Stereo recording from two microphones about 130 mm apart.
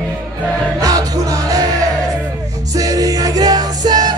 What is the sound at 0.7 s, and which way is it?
Music, 25° right (ahead or behind).